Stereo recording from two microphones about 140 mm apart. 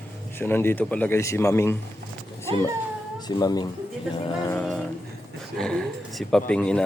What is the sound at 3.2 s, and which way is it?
Speech, 30° left (ahead or behind).